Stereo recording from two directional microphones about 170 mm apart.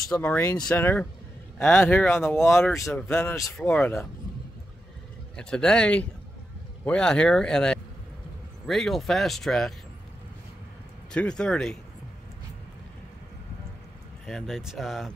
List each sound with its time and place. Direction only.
0.1 s speech: 10° left (ahead or behind)
5.3 s speech: 5° left (ahead or behind)
11.1 s speech: 5° left (ahead or behind)
14.2 s speech: centre (ahead or behind)